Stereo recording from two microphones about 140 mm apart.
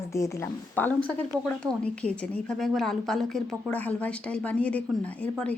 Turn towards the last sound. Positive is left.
turn(degrees=10)  # may be behind; listen again after turning